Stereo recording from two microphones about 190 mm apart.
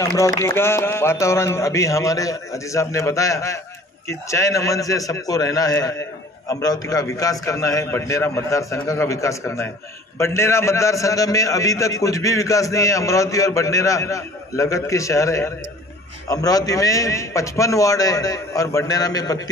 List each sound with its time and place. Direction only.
0.2 s a man's voice: 15° left (ahead or behind)